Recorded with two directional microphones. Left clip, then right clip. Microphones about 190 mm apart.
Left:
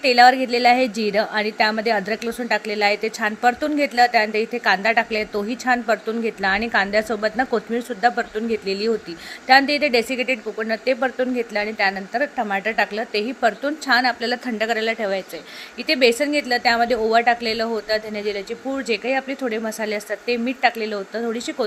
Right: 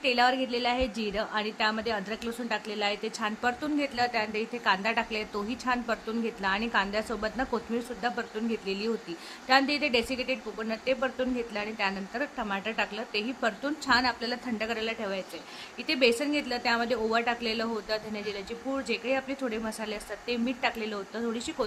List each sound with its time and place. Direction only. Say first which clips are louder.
0.0 s a woman's voice: left 12 dB; 20° left (ahead or behind)